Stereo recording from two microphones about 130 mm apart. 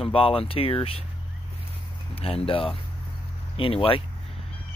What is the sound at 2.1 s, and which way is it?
Speech, 45° left (ahead or behind).